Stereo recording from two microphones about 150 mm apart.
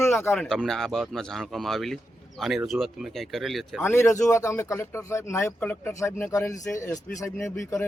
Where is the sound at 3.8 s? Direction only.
15° left (ahead or behind).